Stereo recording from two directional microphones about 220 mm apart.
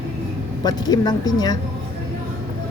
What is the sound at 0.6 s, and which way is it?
Speech, 20° left (ahead or behind).